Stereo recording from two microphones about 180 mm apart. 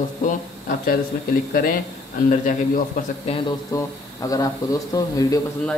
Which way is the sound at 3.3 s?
35° left (ahead or behind).